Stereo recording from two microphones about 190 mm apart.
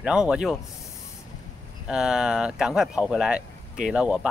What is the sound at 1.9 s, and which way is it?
Speech, 5° right (ahead or behind).